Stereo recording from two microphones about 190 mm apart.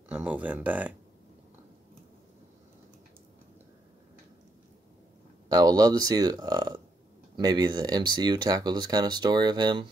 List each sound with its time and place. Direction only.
0.1 s speech: 10° right (ahead or behind)
5.5 s speech: 20° right (ahead or behind)